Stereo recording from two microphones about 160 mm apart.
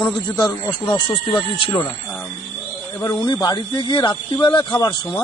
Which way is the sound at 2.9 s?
25° left (ahead or behind).